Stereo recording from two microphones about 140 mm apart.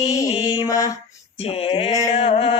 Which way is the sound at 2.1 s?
50° left (ahead or behind).